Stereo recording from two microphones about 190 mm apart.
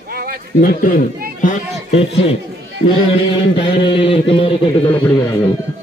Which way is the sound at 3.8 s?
30° left (ahead or behind).